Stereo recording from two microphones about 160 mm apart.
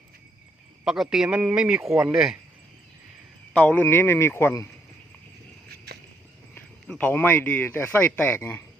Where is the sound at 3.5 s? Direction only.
10° left (ahead or behind).